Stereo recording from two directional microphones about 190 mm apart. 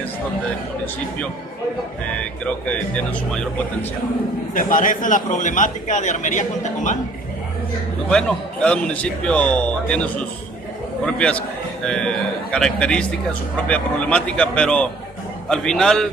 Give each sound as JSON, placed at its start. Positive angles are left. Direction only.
{"t": 2.1, "sound": "a man's voice", "side_deg": 5}
{"t": 4.6, "sound": "a man's voice", "side_deg": 45}
{"t": 8.1, "sound": "a man's voice", "side_deg": 5}